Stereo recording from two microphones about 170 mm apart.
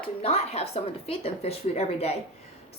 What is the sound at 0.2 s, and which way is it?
A woman's voice, 35° left (ahead or behind).